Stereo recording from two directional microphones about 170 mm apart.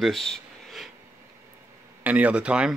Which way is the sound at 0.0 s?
Centre (ahead or behind).